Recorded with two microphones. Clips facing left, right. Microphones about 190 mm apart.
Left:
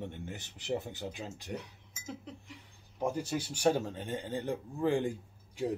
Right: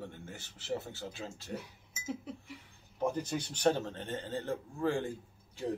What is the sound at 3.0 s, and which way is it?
Speech, 10° left (ahead or behind).